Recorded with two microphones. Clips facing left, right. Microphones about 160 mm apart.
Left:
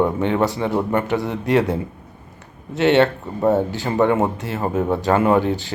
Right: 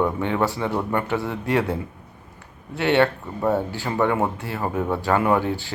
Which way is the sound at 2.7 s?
20° left (ahead or behind).